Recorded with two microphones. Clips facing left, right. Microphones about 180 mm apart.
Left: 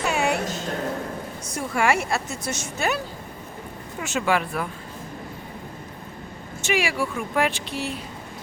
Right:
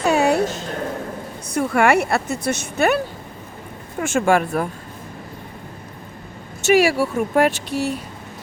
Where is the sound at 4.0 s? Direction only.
50° right (ahead or behind).